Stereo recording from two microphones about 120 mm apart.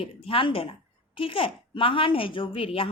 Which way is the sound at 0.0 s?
50° left (ahead or behind).